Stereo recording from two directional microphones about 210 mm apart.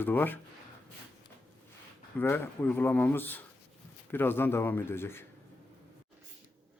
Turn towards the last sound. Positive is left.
turn(degrees=10)  # may be behind; listen again after turning